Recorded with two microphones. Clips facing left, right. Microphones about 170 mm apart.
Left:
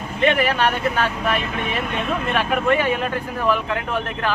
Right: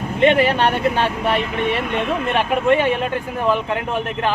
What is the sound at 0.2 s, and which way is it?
Speech, 25° right (ahead or behind).